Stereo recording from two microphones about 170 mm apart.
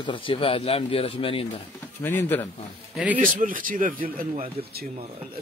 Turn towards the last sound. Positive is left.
turn(degrees=-55)  # may be behind; listen again after turning